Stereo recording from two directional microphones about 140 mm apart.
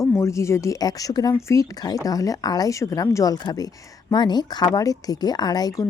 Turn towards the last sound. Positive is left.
turn(degrees=25)  # may be behind; listen again after turning